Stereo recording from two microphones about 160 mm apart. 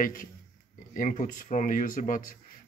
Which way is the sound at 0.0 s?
60° left (ahead or behind).